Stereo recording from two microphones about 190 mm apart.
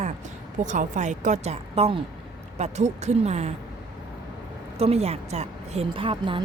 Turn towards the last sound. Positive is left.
turn(degrees=-25)  # may be behind; listen again after turning